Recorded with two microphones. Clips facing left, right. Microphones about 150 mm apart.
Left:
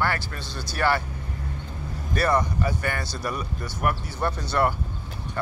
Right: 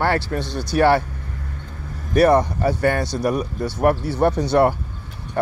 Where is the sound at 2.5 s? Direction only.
30° right (ahead or behind).